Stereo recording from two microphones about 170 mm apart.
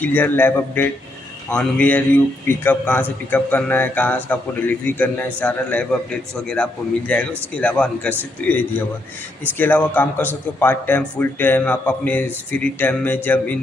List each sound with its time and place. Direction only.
0.0 s a man's voice: 10° left (ahead or behind)
9.6 s a man's voice: 10° left (ahead or behind)